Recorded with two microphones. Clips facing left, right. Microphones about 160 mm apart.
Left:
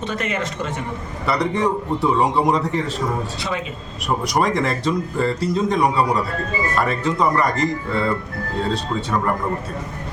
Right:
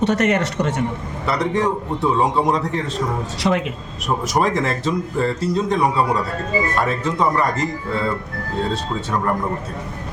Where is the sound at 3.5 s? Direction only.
55° right (ahead or behind).